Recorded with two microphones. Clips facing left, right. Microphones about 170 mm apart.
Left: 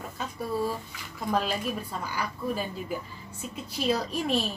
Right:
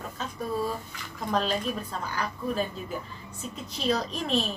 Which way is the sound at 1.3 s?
10° left (ahead or behind).